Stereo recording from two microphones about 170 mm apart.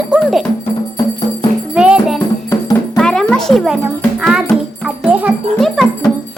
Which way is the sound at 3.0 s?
5° left (ahead or behind).